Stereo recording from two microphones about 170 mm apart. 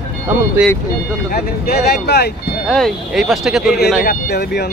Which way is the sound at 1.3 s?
65° left (ahead or behind).